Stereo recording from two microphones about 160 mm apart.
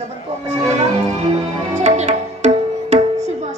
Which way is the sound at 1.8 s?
45° right (ahead or behind).